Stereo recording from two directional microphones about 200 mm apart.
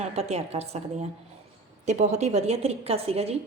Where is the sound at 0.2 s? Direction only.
30° right (ahead or behind).